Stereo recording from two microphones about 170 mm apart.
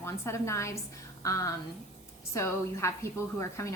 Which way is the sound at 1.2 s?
20° left (ahead or behind).